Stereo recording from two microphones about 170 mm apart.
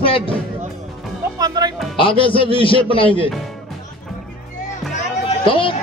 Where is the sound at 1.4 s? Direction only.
25° right (ahead or behind).